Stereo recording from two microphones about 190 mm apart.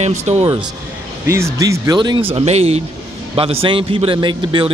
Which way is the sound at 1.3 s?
15° right (ahead or behind).